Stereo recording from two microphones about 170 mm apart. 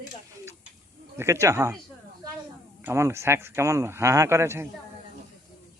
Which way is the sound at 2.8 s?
15° right (ahead or behind).